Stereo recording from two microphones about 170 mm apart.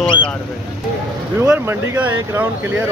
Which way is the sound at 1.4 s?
15° right (ahead or behind).